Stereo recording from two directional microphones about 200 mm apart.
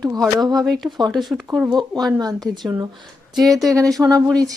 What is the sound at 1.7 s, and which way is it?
Speech, 20° right (ahead or behind).